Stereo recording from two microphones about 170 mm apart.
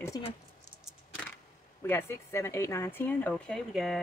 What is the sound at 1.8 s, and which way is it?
Speech, 15° left (ahead or behind).